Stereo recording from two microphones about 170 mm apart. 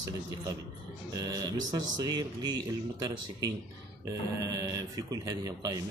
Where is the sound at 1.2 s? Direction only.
20° right (ahead or behind).